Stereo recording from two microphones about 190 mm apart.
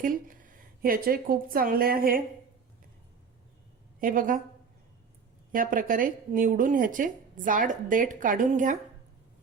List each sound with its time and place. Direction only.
0.0 s a woman's voice: 45° right (ahead or behind)
4.0 s a woman's voice: 45° right (ahead or behind)
5.5 s a woman's voice: 45° right (ahead or behind)